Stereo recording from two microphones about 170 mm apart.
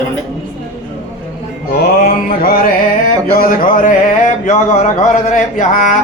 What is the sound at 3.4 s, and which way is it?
Speech, 55° left (ahead or behind).